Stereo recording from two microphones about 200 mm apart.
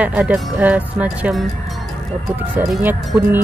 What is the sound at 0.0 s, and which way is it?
Speech, 5° right (ahead or behind).